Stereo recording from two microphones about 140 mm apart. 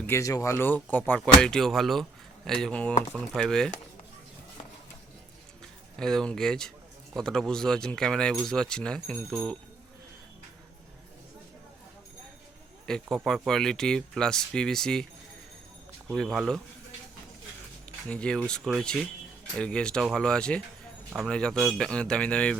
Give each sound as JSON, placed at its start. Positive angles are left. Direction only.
{"t": 0.0, "sound": "speech", "side_deg": 20}
{"t": 6.0, "sound": "speech", "side_deg": 5}
{"t": 12.8, "sound": "speech", "side_deg": 5}
{"t": 16.1, "sound": "speech", "side_deg": 0}
{"t": 18.1, "sound": "speech", "side_deg": 5}